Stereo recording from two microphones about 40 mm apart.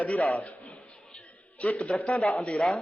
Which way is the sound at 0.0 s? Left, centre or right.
Left.